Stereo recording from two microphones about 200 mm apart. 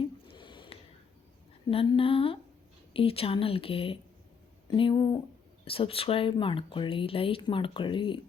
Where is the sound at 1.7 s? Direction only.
25° left (ahead or behind).